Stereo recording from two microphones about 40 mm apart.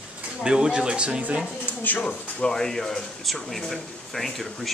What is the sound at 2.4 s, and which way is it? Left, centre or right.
Speech, centre.